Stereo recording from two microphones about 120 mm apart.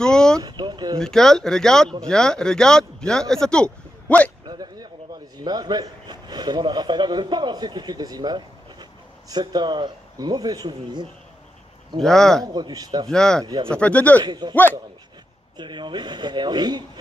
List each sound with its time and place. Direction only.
0.0 s a sound: 5° left (ahead or behind)
0.4 s a sound: 35° right (ahead or behind)
0.9 s speech: 5° left (ahead or behind)
4.5 s a sound: 35° right (ahead or behind)
5.4 s a man's voice: 35° right (ahead or behind)
12.0 s speech: 5° left (ahead or behind)
12.4 s a man's voice: 35° right (ahead or behind)
13.1 s speech: 5° left (ahead or behind)
14.2 s a man's voice: 35° right (ahead or behind)
14.5 s speech: 15° left (ahead or behind)
15.5 s a man's voice: 40° right (ahead or behind)